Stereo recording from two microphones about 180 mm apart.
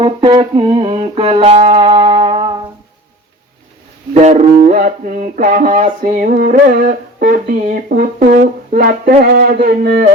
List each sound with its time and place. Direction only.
0.0 s music: 25° right (ahead or behind)
4.1 s speech: 40° right (ahead or behind); by 10.1 s 55° right (ahead or behind)